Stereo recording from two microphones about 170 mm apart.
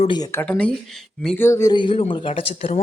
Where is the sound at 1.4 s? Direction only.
20° left (ahead or behind); by 2.8 s 35° left (ahead or behind).